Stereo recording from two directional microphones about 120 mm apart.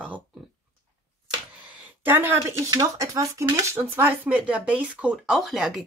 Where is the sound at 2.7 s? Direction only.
30° right (ahead or behind).